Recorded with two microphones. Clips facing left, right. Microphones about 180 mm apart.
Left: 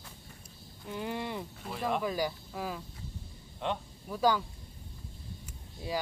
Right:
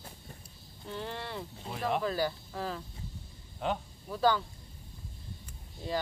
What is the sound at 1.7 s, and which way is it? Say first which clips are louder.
Speech: even; centre (ahead or behind).